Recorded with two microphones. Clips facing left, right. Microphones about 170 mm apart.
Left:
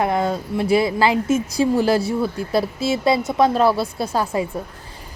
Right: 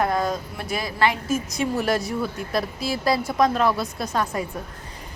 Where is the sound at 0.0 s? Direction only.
25° left (ahead or behind).